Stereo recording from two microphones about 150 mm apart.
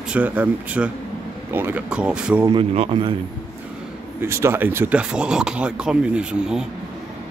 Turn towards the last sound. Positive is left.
turn(degrees=-5)  # may be behind; listen again after turning